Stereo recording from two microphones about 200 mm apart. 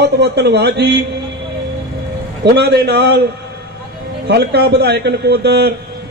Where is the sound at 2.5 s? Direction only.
55° right (ahead or behind).